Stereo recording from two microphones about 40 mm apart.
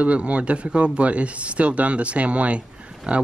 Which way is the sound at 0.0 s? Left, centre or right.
Right.